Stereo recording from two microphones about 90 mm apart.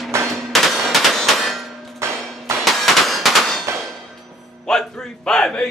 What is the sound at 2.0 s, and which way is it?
Hammer, 30° right (ahead or behind).